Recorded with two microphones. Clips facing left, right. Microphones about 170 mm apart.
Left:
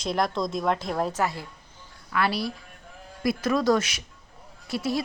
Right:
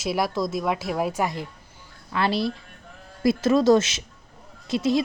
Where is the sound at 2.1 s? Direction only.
25° right (ahead or behind).